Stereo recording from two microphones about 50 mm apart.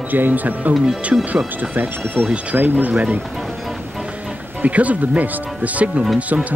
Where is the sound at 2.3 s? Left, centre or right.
Right.